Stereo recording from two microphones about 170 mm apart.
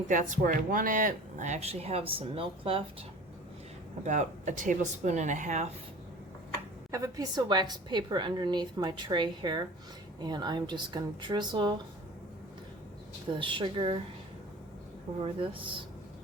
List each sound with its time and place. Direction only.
0.1 s speech: 50° right (ahead or behind); by 2.8 s 30° right (ahead or behind)
4.0 s speech: 45° right (ahead or behind)
6.9 s a woman's voice: 20° right (ahead or behind)
13.3 s a woman's voice: 30° right (ahead or behind)
15.2 s speech: 30° right (ahead or behind)